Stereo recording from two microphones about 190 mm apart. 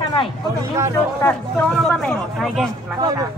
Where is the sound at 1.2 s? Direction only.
20° left (ahead or behind).